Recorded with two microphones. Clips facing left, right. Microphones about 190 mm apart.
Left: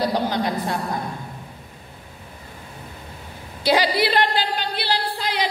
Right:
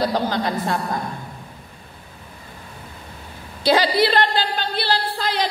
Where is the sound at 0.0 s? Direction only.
15° left (ahead or behind).